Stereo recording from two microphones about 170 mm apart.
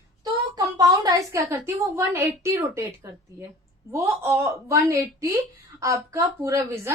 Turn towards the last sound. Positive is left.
turn(degrees=-15)  # may be behind; listen again after turning